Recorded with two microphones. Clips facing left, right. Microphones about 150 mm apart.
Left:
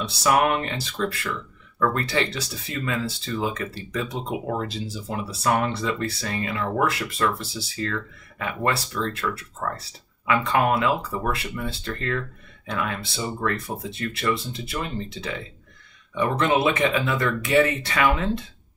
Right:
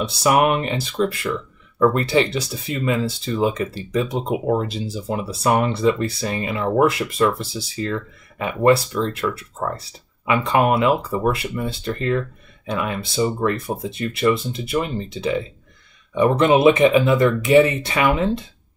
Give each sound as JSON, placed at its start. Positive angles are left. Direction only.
{"t": 0.0, "sound": "speech", "side_deg": -15}